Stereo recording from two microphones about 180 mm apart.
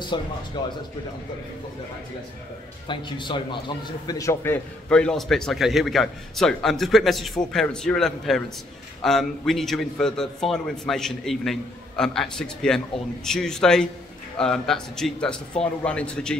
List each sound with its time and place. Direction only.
0.1 s speech: 25° left (ahead or behind)
2.9 s a man's voice: 25° left (ahead or behind); by 16.3 s 5° left (ahead or behind)